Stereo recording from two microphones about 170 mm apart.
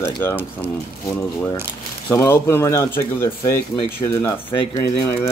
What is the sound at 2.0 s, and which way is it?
Speech, 15° left (ahead or behind).